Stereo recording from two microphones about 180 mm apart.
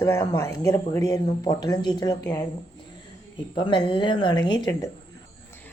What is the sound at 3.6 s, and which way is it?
Speech, 25° left (ahead or behind).